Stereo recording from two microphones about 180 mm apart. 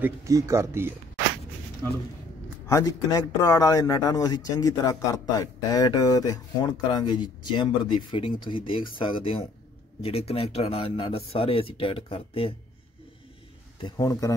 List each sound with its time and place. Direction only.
0.0 s speech: 15° right (ahead or behind)
2.7 s speech: 20° left (ahead or behind)
13.7 s speech: 20° left (ahead or behind)